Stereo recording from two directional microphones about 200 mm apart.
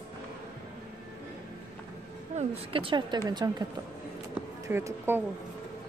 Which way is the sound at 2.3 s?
30° right (ahead or behind).